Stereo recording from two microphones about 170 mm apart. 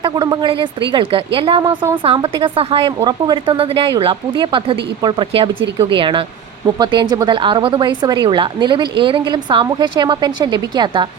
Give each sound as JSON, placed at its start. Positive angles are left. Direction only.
{"t": 0.0, "sound": "a woman's voice", "side_deg": -25}